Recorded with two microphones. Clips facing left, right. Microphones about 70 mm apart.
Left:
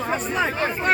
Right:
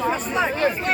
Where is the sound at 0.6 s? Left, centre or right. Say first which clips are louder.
Right 2 dB; left.